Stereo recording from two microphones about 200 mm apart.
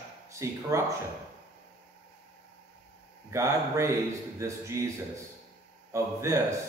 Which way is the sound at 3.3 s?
15° right (ahead or behind).